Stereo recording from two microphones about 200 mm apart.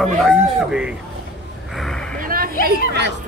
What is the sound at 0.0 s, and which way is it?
Speech, centre (ahead or behind).